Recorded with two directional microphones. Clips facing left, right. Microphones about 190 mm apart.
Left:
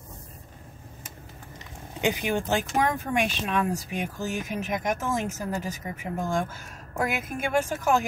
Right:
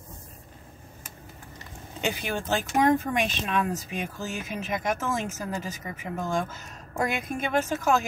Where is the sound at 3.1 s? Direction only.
10° left (ahead or behind).